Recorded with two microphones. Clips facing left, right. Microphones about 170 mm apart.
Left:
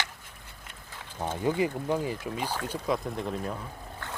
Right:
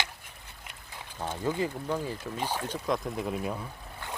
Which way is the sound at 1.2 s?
15° left (ahead or behind).